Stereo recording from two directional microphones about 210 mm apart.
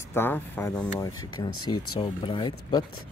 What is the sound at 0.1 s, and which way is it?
Speech, 10° left (ahead or behind).